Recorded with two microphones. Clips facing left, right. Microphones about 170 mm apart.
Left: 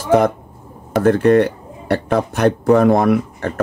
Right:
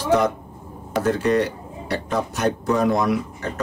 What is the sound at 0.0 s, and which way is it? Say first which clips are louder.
Speech: left 5 dB; 55° left (ahead or behind).